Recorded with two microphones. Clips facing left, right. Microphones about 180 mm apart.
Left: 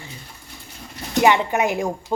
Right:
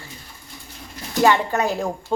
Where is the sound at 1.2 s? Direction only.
15° left (ahead or behind).